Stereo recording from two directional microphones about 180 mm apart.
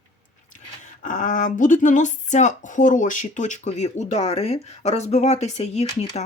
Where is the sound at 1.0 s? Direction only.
45° left (ahead or behind).